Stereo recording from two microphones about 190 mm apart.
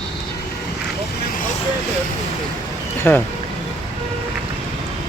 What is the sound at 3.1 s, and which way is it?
Speech, 10° left (ahead or behind).